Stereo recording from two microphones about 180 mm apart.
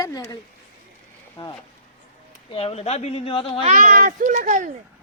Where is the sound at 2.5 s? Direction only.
35° left (ahead or behind).